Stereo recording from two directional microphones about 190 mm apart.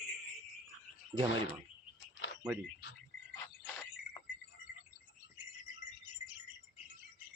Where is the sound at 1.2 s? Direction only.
75° left (ahead or behind).